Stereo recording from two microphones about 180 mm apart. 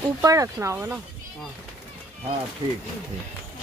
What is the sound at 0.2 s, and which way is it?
Speech, 20° right (ahead or behind).